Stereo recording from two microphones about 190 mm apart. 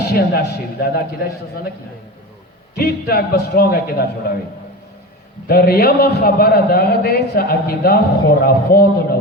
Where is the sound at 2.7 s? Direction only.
55° left (ahead or behind).